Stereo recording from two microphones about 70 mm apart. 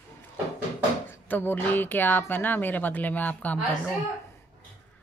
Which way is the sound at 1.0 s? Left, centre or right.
Left.